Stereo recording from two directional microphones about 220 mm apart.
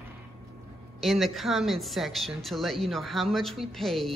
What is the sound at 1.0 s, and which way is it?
Speech, centre (ahead or behind).